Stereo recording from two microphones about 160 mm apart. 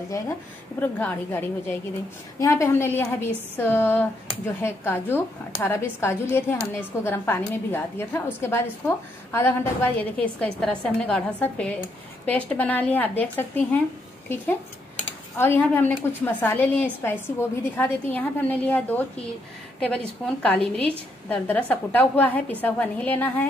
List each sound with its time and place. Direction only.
0.7 s a woman's voice: 10° left (ahead or behind)
15.3 s a woman's voice: 15° left (ahead or behind)